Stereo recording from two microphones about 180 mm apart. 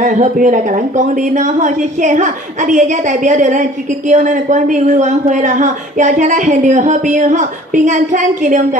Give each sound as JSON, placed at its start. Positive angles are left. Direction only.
{"t": 0.0, "sound": "a woman's voice", "side_deg": -45}